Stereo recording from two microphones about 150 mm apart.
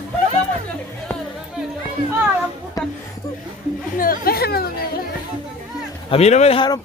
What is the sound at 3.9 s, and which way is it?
Speech, 80° left.